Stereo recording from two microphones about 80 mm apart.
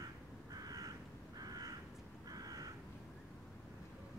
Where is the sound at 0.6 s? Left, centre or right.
Right.